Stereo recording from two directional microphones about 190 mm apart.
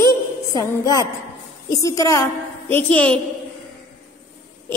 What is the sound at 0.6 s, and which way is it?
Music, 20° left (ahead or behind).